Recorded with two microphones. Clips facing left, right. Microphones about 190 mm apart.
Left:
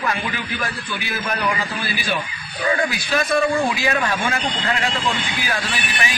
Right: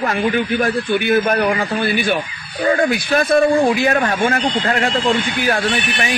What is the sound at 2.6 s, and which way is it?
Speech, 40° right (ahead or behind).